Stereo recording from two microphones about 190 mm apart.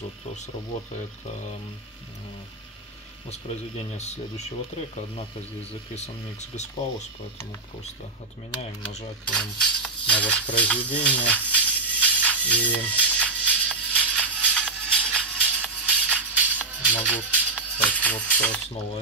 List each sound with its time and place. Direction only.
3.3 s speech: 35° left (ahead or behind)
5.9 s speech: 35° left (ahead or behind)
9.2 s music: 5° left (ahead or behind)
15.4 s music: 10° right (ahead or behind)
17.7 s speech: 10° left (ahead or behind)